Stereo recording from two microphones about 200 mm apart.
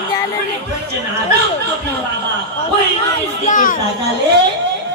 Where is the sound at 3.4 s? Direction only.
40° left (ahead or behind).